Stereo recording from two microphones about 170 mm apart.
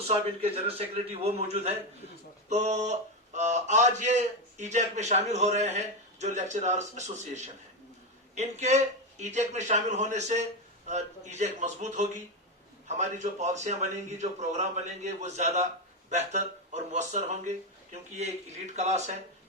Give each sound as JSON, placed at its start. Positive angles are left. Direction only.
{"t": 0.1, "sound": "a man's voice", "side_deg": -35}